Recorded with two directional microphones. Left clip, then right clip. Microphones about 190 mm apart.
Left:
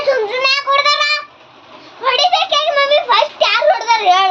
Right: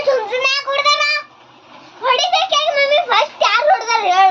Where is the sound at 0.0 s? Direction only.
5° right (ahead or behind).